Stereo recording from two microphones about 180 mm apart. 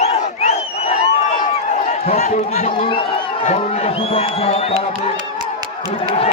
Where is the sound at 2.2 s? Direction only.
45° left (ahead or behind).